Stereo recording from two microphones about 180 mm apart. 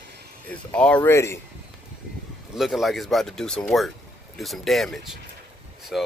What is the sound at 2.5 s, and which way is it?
Speech, centre (ahead or behind).